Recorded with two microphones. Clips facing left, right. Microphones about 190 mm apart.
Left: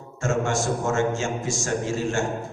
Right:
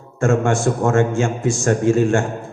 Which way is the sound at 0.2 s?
55° right (ahead or behind).